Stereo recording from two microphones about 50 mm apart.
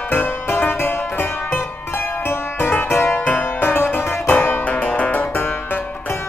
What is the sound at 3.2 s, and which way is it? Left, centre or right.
Music, left.